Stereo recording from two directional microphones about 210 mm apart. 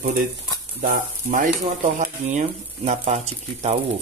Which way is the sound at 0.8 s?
40° right (ahead or behind).